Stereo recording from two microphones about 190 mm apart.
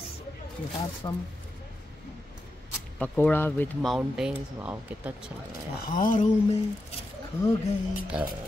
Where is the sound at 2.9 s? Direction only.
5° left (ahead or behind); by 5.2 s 10° right (ahead or behind).